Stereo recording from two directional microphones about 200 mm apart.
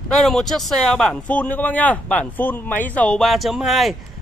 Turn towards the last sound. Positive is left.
turn(degrees=0)  # may be behind; listen again after turning